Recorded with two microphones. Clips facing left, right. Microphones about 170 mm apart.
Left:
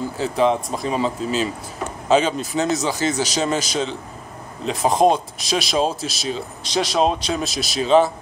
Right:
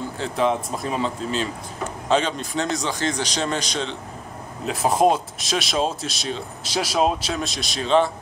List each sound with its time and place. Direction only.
0.2 s speech: centre (ahead or behind)